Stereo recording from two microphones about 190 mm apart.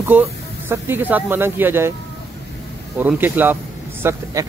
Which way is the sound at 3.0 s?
10° right (ahead or behind).